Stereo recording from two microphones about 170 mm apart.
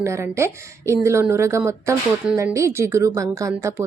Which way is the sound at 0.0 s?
15° right (ahead or behind).